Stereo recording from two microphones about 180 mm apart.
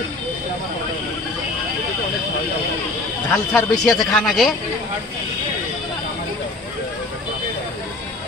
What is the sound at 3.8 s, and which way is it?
Speech, 5° left (ahead or behind).